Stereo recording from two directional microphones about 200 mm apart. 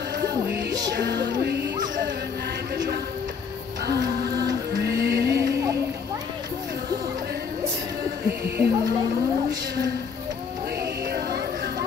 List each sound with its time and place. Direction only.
1.0 s music: 60° right (ahead or behind)
4.0 s music: 20° right (ahead or behind)
4.8 s music: 55° right (ahead or behind)
5.3 s music: 15° right (ahead or behind)
8.5 s speech: 15° right (ahead or behind)